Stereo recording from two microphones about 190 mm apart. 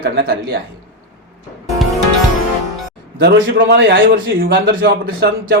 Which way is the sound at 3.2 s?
65° right (ahead or behind).